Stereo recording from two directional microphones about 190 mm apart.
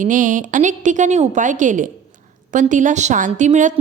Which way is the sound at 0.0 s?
45° right (ahead or behind).